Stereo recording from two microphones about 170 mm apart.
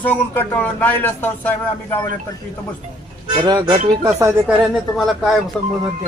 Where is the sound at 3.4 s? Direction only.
25° right (ahead or behind).